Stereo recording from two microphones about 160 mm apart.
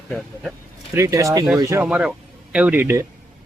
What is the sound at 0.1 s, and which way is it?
Speech, 5° left (ahead or behind).